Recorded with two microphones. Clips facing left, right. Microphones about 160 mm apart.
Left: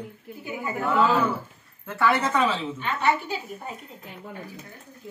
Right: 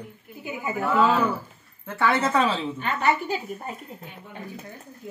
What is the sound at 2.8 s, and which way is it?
Speech, 45° right (ahead or behind).